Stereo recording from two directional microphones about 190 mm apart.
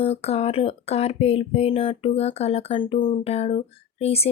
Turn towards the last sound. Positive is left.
turn(degrees=30)  # may be behind; listen again after turning